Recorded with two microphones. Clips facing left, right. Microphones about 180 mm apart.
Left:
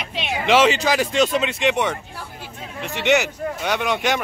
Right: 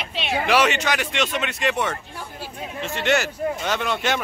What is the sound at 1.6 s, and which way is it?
A man's voice, 15° left (ahead or behind).